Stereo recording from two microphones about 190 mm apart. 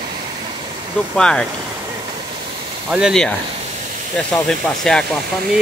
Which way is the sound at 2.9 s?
Centre (ahead or behind).